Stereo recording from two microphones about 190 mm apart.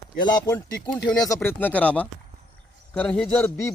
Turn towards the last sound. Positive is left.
turn(degrees=15)  # may be behind; listen again after turning